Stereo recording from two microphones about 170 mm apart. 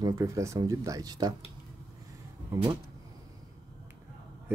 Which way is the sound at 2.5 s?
25° right (ahead or behind).